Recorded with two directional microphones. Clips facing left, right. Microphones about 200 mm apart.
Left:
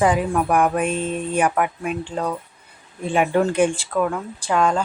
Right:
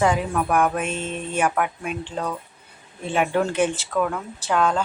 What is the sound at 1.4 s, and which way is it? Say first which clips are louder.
A woman's voice: left 1 dB; 5° left (ahead or behind).